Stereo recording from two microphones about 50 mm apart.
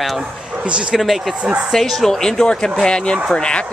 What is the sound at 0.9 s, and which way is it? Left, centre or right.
Speech, centre.